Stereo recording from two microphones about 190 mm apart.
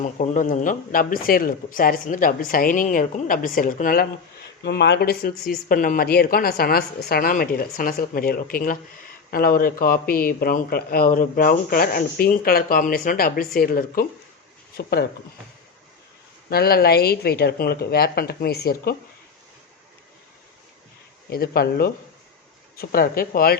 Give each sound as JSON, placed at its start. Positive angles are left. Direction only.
{"t": 0.0, "sound": "a man's voice", "side_deg": 40}
{"t": 4.6, "sound": "a man's voice", "side_deg": 65}
{"t": 16.5, "sound": "speech", "side_deg": 55}
{"t": 21.2, "sound": "a man's voice", "side_deg": 55}